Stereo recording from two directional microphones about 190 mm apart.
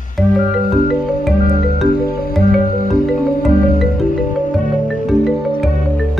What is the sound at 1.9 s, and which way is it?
Music, 50° left (ahead or behind).